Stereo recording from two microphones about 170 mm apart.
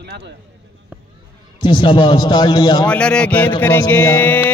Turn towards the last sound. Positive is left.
turn(degrees=10)  # may be behind; listen again after turning